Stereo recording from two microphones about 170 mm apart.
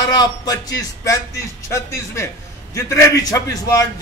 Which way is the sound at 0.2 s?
20° left (ahead or behind).